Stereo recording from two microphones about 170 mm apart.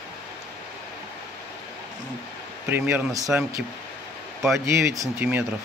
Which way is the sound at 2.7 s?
15° right (ahead or behind).